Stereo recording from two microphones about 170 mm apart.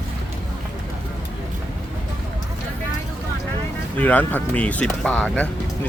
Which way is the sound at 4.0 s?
10° left (ahead or behind).